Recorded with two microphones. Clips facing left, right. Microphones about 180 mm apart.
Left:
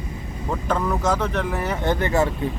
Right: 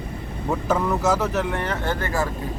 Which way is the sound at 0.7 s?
5° right (ahead or behind).